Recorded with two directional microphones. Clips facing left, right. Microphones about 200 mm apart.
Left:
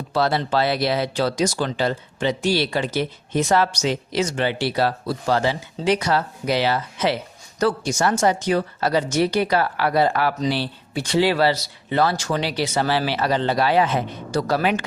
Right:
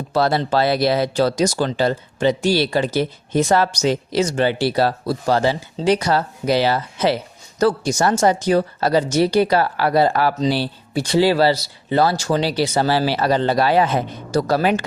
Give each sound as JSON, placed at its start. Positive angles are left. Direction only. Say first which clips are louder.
{"t": 0.1, "sound": "speech", "louder": "right 3 dB", "side_deg": -40}